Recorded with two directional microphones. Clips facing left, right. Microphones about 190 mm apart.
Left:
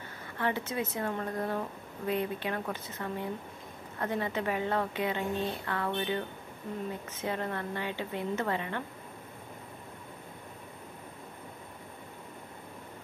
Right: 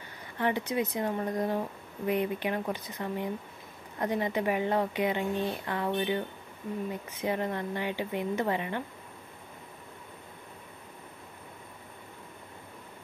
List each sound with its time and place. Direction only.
0.4 s a woman's voice: 15° right (ahead or behind)